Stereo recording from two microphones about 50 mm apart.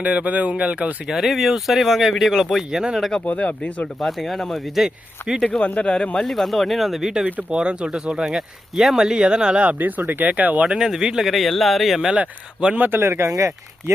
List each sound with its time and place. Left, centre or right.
0.0 s speech: right
1.0 s speech: centre
3.2 s speech: left
4.0 s speech: centre
5.5 s speech: left
6.2 s speech: centre
7.3 s speech: right
7.6 s speech: centre
9.6 s speech: right
10.7 s speech: centre
12.1 s speech: right
12.7 s speech: right
13.0 s speech: right